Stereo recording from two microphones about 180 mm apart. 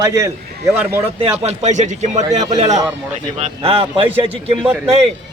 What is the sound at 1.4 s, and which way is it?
A man's voice, 40° right (ahead or behind).